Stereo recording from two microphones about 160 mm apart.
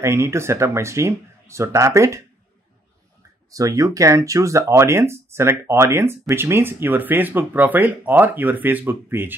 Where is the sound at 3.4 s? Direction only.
20° right (ahead or behind).